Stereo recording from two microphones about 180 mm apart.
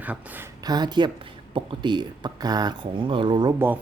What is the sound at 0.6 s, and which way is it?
Speech, 20° right (ahead or behind).